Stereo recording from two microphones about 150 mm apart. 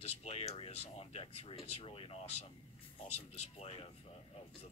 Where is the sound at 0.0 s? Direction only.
45° left (ahead or behind).